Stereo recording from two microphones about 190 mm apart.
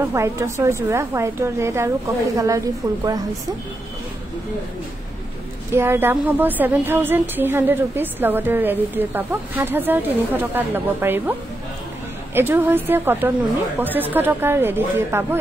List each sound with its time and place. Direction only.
0.1 s a woman's voice: 15° right (ahead or behind)
5.7 s a woman's voice: 10° right (ahead or behind)
12.4 s a woman's voice: 10° right (ahead or behind)